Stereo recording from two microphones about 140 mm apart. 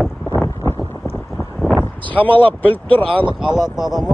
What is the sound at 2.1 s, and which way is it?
Speech, 10° left (ahead or behind).